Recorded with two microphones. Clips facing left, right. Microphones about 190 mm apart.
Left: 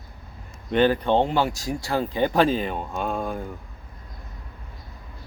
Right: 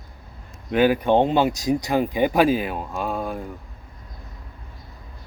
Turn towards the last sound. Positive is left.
turn(degrees=0)  # may be behind; listen again after turning